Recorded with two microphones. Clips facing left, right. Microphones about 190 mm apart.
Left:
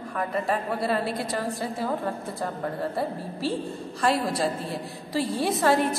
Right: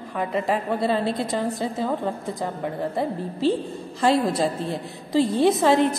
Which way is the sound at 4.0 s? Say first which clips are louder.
Right 4 dB; 25° right (ahead or behind).